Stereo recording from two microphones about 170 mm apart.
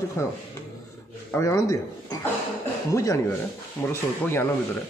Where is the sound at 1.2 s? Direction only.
15° left (ahead or behind).